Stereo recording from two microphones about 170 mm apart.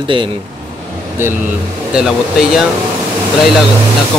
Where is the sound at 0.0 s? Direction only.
30° right (ahead or behind).